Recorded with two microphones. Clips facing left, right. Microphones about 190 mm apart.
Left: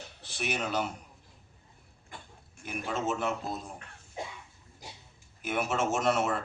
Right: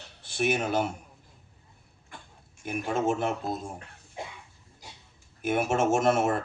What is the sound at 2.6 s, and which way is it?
Speech, 50° right (ahead or behind).